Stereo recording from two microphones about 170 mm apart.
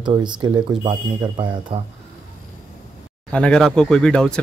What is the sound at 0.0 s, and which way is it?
Speech, 25° right (ahead or behind).